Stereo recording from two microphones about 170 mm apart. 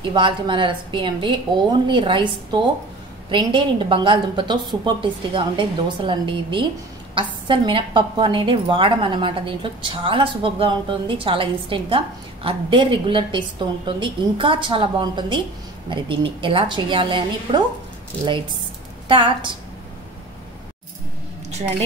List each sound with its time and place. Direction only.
0.0 s a woman's voice: 30° right (ahead or behind)
19.0 s a woman's voice: 30° right (ahead or behind)